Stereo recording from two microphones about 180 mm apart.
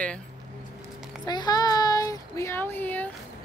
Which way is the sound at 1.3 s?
20° left (ahead or behind).